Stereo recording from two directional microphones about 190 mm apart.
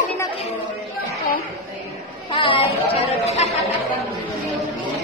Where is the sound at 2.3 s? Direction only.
25° left (ahead or behind).